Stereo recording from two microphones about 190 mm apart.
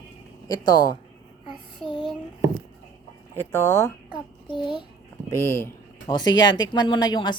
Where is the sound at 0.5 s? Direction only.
20° left (ahead or behind).